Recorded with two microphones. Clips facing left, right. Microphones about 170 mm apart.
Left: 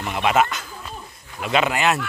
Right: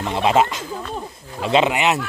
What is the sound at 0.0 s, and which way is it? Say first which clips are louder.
Speech: right 2 dB; 30° right (ahead or behind).